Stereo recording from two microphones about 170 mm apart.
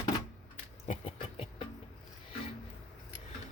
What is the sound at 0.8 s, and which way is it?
Music, 35° left (ahead or behind).